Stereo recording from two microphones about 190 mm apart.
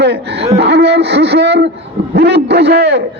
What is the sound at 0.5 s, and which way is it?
A man's voice, 60° right (ahead or behind).